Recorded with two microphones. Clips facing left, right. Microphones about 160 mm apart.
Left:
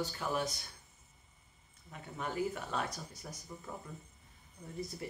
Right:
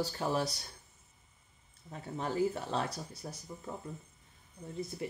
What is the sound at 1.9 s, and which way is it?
Speech, 30° right (ahead or behind).